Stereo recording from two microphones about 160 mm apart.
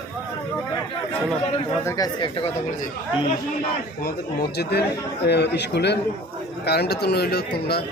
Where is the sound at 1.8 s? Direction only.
25° left (ahead or behind).